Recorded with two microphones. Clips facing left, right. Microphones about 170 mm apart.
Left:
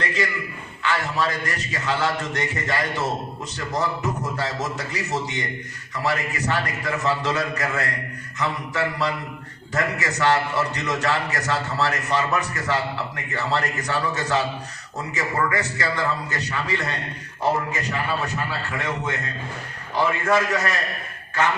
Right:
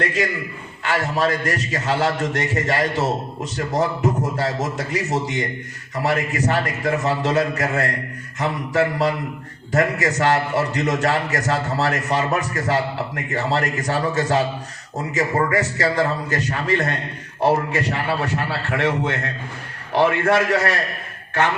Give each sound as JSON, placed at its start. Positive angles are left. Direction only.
{"t": 0.0, "sound": "a man's voice", "side_deg": -45}
{"t": 5.9, "sound": "a man's voice", "side_deg": -45}
{"t": 17.7, "sound": "a man's voice", "side_deg": -75}